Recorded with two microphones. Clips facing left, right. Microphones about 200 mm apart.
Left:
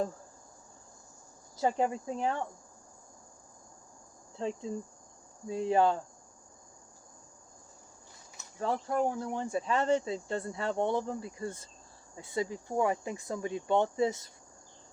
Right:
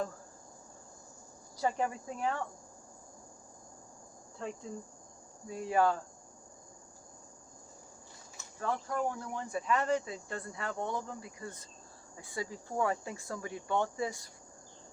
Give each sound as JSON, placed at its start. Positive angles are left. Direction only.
{"t": 1.6, "sound": "speech", "side_deg": 25}
{"t": 4.4, "sound": "speech", "side_deg": 25}
{"t": 8.6, "sound": "speech", "side_deg": 30}